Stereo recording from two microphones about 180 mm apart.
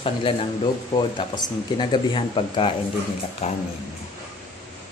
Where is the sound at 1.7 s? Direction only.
25° left (ahead or behind).